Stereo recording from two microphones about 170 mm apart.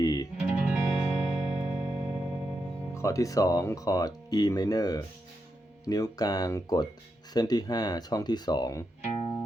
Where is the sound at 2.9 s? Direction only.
20° left (ahead or behind).